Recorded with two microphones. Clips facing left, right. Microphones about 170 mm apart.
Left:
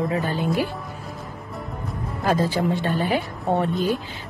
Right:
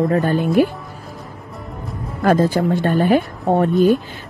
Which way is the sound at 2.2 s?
50° right (ahead or behind).